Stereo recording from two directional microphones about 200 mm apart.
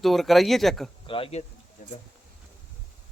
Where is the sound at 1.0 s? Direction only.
25° left (ahead or behind).